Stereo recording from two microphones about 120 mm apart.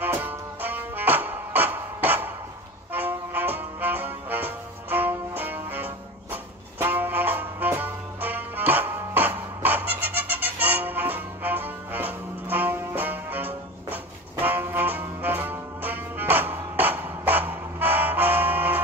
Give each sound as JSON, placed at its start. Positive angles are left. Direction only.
{"t": 0.0, "sound": "music", "side_deg": -15}